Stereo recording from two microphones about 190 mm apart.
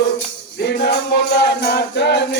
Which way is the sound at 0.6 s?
65° left (ahead or behind).